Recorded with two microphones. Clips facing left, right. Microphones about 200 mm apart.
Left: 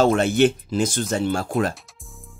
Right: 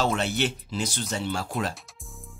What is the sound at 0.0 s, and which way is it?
Speech, 50° left (ahead or behind).